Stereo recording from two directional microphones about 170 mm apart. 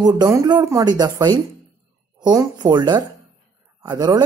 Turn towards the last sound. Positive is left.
turn(degrees=-25)  # may be behind; listen again after turning